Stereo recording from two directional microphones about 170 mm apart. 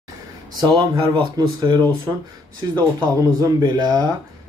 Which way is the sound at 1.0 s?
25° right (ahead or behind).